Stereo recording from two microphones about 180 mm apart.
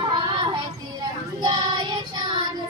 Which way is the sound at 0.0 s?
25° right (ahead or behind).